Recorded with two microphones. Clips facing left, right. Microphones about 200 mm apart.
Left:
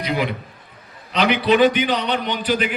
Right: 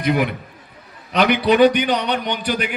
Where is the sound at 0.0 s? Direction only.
50° right (ahead or behind).